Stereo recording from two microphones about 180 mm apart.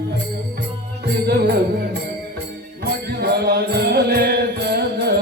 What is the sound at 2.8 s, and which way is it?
Music, 60° right (ahead or behind).